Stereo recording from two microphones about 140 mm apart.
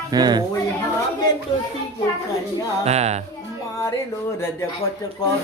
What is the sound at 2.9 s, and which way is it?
Speech, 50° right (ahead or behind).